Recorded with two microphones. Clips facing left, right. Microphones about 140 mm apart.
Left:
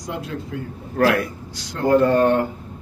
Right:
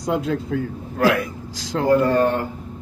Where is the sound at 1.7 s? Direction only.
90° right.